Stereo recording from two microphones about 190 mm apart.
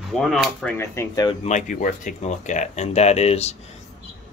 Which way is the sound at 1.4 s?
40° left (ahead or behind).